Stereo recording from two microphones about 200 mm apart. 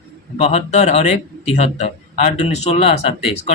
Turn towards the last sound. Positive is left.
turn(degrees=30)  # may be behind; listen again after turning